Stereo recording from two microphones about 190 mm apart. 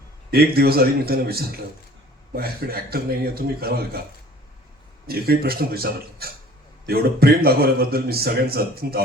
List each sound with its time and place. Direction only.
0.3 s speech: 55° right (ahead or behind)
5.0 s speech: 55° right (ahead or behind)